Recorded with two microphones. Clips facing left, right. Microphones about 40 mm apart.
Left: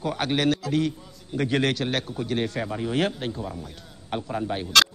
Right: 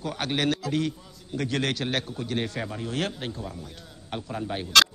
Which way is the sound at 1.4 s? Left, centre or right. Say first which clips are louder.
Left 4 dB; centre.